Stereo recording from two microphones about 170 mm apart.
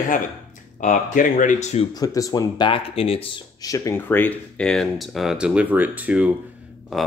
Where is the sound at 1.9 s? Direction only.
20° left (ahead or behind).